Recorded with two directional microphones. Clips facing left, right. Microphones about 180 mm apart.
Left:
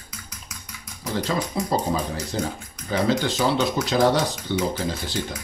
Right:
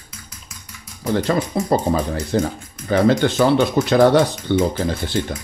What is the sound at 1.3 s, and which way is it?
Speech, 60° right (ahead or behind).